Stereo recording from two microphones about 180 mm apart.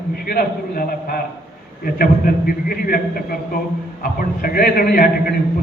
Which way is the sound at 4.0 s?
55° left (ahead or behind).